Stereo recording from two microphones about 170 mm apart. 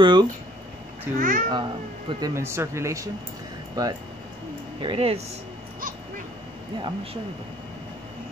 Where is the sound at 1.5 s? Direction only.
30° right (ahead or behind).